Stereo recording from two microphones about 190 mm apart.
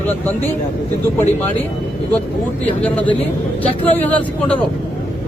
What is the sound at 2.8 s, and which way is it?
Speech, 10° left (ahead or behind).